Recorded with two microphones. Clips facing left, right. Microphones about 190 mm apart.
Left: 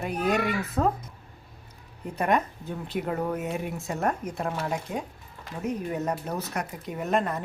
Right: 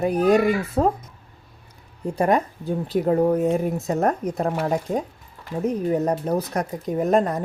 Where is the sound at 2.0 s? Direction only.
30° right (ahead or behind).